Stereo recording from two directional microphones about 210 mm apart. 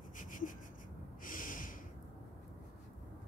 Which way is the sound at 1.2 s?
40° left (ahead or behind).